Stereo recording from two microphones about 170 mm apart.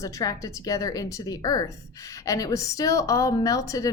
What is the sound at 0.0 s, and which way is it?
A woman's voice, 20° left (ahead or behind).